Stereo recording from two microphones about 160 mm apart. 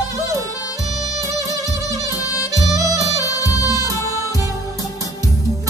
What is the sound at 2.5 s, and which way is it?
Music, 20° right (ahead or behind).